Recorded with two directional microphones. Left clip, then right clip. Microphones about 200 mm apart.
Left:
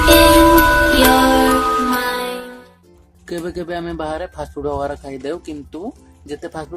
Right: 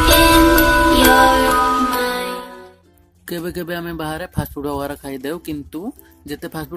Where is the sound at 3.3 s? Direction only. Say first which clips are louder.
Left 1 dB; 40° right (ahead or behind).